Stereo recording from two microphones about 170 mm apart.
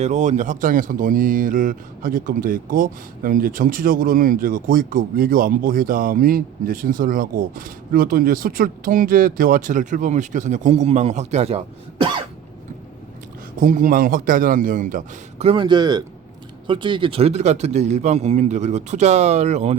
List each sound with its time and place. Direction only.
0.0 s speech: 45° right (ahead or behind)
13.6 s a man's voice: 50° right (ahead or behind)
15.4 s a man's voice: 30° right (ahead or behind)